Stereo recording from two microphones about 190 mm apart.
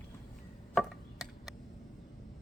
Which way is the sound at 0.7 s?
Centre (ahead or behind).